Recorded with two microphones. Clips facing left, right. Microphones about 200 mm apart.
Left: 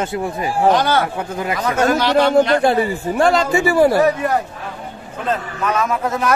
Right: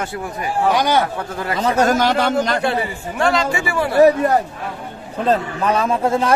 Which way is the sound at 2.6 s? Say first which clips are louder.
Left 5 dB; 40° left (ahead or behind).